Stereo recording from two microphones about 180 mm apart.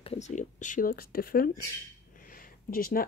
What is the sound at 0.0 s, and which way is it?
Speech, 35° left (ahead or behind).